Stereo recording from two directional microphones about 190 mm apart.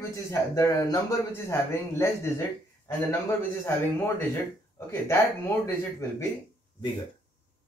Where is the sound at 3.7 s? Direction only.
15° left (ahead or behind).